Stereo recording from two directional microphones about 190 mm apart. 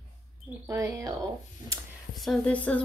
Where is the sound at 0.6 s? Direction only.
15° right (ahead or behind).